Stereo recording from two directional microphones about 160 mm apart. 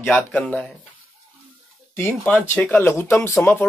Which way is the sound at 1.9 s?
10° left (ahead or behind).